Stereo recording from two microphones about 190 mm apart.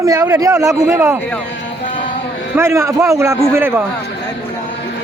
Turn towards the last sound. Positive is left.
turn(degrees=-10)  # may be behind; listen again after turning